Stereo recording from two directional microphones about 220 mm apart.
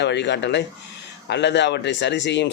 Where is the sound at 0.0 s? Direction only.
50° left (ahead or behind).